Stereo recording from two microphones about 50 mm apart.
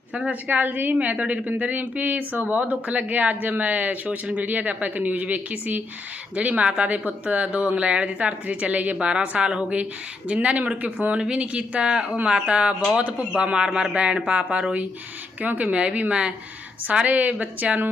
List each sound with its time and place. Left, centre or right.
0.1 s a woman's voice: right
0.4 s speech: right
0.9 s speech: right
15.4 s speech: right